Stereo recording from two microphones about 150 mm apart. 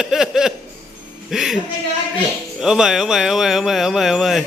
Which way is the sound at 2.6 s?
5° right (ahead or behind).